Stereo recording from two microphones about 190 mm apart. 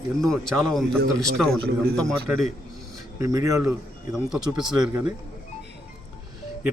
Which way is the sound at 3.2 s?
15° right (ahead or behind).